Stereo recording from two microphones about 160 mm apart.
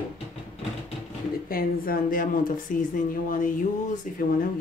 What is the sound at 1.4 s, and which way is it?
A woman's voice, 65° left (ahead or behind).